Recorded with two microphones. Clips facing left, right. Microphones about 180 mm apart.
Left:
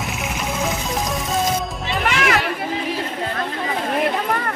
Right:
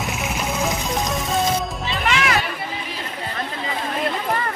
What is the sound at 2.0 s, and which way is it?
Music, 55° left (ahead or behind).